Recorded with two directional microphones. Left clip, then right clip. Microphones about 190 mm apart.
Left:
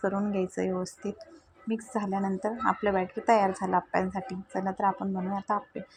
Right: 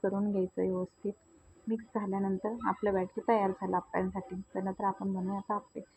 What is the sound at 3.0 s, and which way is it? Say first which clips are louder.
A woman's voice: left 5 dB; 35° left (ahead or behind).